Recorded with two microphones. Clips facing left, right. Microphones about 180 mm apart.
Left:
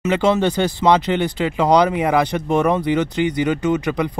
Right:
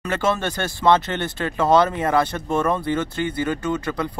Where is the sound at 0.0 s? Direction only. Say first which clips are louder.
Left 6 dB; 20° left (ahead or behind).